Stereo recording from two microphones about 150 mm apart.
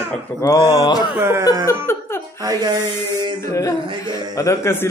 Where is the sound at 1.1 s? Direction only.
15° right (ahead or behind).